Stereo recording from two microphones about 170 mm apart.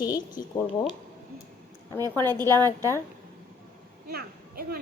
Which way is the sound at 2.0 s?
25° right (ahead or behind).